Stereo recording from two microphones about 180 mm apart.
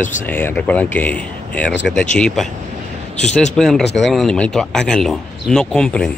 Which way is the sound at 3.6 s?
Centre (ahead or behind).